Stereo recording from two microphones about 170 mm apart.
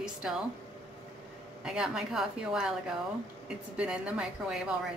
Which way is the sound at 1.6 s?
5° right (ahead or behind).